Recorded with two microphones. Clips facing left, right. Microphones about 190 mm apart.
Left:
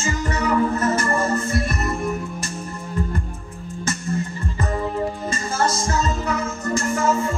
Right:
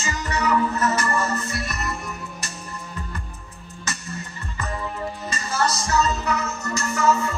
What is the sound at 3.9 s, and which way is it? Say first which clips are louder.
Music: left 9 dB; 50° left (ahead or behind).